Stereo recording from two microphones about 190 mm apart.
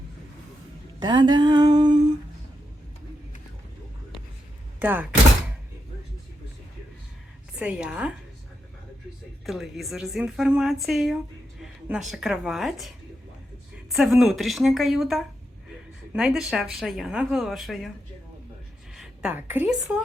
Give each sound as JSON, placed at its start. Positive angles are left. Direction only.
{"t": 0.9, "sound": "a sound", "side_deg": -20}
{"t": 4.8, "sound": "speech", "side_deg": -10}
{"t": 7.6, "sound": "speech", "side_deg": -5}
{"t": 9.5, "sound": "speech", "side_deg": 0}
{"t": 13.9, "sound": "speech", "side_deg": 0}
{"t": 18.9, "sound": "a woman's voice", "side_deg": -5}